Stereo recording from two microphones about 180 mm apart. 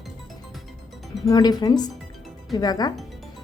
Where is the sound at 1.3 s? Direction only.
20° left (ahead or behind).